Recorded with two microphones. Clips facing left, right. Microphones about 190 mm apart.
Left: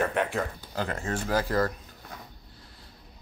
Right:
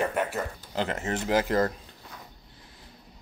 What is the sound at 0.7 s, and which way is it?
Speech, 20° right (ahead or behind).